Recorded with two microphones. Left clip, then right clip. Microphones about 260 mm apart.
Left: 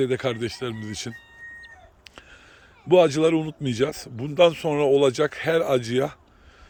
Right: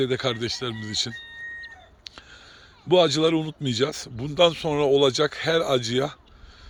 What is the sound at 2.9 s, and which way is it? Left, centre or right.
Speech, centre.